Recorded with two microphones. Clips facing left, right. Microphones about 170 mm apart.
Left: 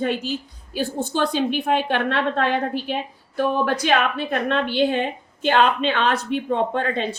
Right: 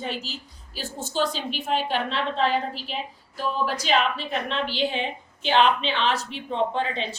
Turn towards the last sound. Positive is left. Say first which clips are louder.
# left 4 dB
turn(degrees=50)  # may be behind; listen again after turning